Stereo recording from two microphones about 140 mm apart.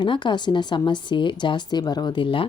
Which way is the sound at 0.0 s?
35° left (ahead or behind).